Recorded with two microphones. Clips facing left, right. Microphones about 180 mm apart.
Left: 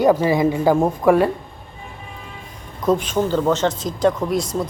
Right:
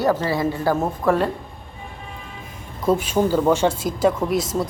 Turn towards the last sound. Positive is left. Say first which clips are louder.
# even
turn(degrees=0)  # may be behind; listen again after turning